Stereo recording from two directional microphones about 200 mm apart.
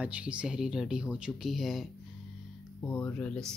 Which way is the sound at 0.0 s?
5° right (ahead or behind).